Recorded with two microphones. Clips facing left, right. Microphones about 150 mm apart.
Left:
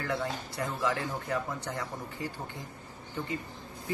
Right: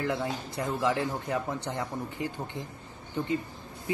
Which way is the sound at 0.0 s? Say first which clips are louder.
Right 3 dB; 20° right (ahead or behind).